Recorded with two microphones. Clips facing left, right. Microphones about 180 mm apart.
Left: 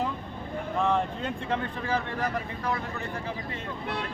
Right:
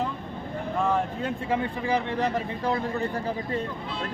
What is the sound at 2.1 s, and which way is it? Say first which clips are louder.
Speech: right 4 dB; 25° right (ahead or behind).